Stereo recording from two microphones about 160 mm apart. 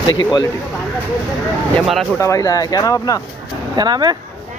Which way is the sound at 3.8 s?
25° right (ahead or behind).